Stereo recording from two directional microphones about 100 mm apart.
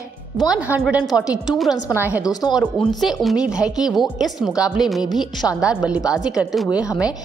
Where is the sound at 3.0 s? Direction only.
5° right (ahead or behind).